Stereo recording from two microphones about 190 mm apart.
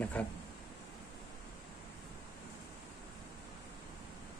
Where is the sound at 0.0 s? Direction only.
10° left (ahead or behind).